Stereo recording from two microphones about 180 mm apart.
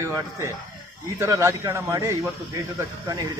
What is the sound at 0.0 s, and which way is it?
Speech, 15° right (ahead or behind).